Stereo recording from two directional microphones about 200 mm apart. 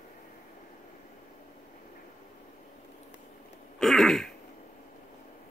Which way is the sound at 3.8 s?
Centre (ahead or behind).